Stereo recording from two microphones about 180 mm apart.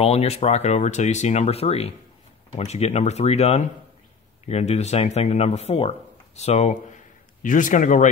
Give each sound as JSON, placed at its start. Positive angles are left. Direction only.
{"t": 0.0, "sound": "speech", "side_deg": 35}